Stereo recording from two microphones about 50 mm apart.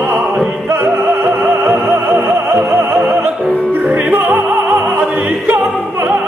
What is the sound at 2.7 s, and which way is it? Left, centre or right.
Opera, right.